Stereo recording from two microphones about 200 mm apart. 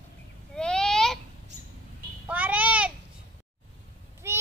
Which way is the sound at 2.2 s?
5° right (ahead or behind).